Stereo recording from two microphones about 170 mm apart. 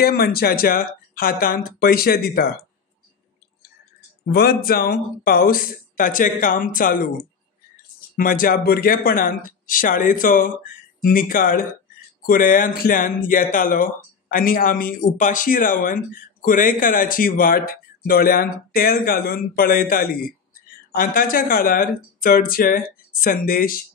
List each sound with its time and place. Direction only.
0.0 s speech: 65° left (ahead or behind)
4.3 s speech: 65° left (ahead or behind)
8.2 s speech: 55° left (ahead or behind)